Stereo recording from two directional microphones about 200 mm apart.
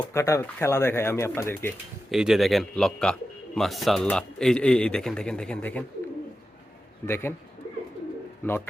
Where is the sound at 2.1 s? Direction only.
Centre (ahead or behind).